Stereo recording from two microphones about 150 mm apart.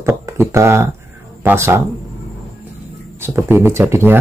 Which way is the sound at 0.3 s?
20° right (ahead or behind).